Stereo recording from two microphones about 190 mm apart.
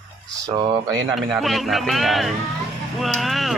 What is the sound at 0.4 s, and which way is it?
Speech, 20° right (ahead or behind).